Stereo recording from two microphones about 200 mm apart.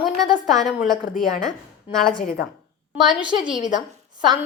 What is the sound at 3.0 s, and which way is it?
Speech, 5° right (ahead or behind).